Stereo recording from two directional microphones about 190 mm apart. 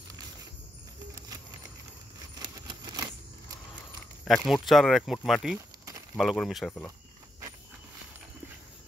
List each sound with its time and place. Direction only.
2.3 s typewriter: 25° right (ahead or behind)
4.2 s speech: centre (ahead or behind)